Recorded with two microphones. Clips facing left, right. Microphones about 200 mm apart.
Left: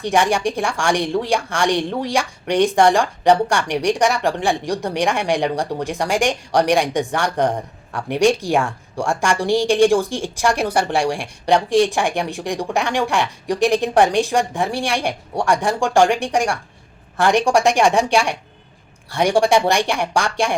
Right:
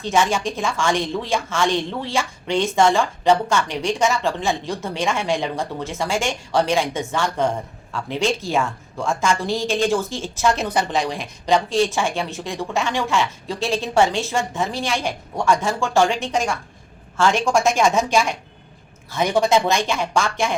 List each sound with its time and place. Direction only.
0.0 s a woman's voice: 15° left (ahead or behind)